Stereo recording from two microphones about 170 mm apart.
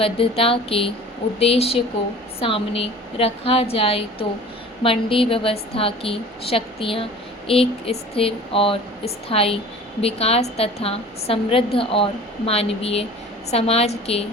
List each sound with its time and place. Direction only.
0.0 s a woman's voice: 35° left (ahead or behind)